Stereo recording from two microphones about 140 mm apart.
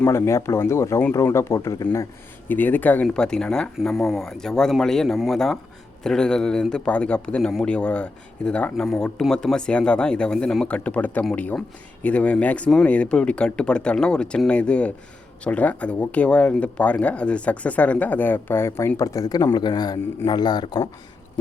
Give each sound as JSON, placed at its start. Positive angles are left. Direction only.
{"t": 0.0, "sound": "speech", "side_deg": 20}
{"t": 2.5, "sound": "speech", "side_deg": 10}